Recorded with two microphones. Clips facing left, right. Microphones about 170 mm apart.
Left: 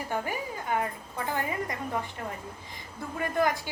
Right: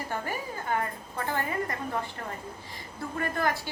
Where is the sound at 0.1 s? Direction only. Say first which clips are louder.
Left 3 dB; 15° left (ahead or behind).